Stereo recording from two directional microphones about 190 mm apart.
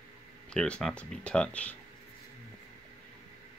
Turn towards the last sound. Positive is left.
turn(degrees=5)  # may be behind; listen again after turning